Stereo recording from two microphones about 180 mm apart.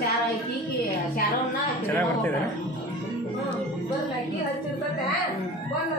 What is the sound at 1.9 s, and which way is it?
Speech, 10° left (ahead or behind).